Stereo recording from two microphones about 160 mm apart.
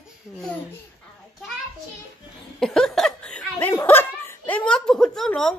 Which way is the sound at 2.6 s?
5° left (ahead or behind).